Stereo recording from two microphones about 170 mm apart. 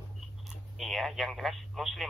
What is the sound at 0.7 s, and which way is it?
Speech, centre (ahead or behind).